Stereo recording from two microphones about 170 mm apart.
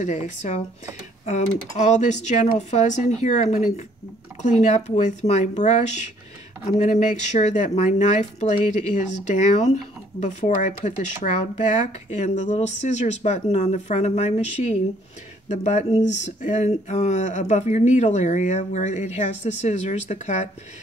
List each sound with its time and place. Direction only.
0.0 s speech: 45° left (ahead or behind)